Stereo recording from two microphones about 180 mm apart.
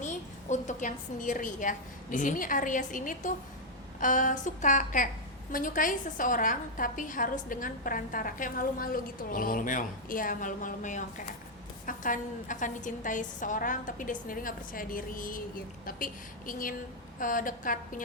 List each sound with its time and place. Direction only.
0.0 s a woman's voice: 40° left (ahead or behind)